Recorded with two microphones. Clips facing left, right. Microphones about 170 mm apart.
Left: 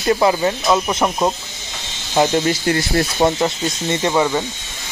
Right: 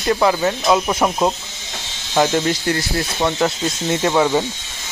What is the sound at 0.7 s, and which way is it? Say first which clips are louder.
Speech: right 2 dB; 5° right (ahead or behind).